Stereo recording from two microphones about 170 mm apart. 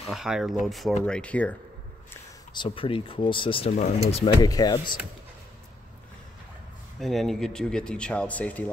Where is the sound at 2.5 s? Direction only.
30° left (ahead or behind).